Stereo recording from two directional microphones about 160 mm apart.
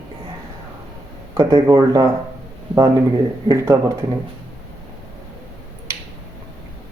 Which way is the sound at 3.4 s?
20° right (ahead or behind).